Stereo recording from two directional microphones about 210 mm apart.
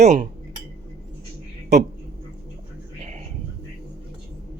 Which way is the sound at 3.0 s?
30° right (ahead or behind).